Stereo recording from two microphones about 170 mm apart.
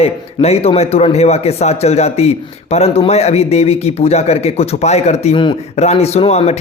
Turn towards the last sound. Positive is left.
turn(degrees=40)  # may be behind; listen again after turning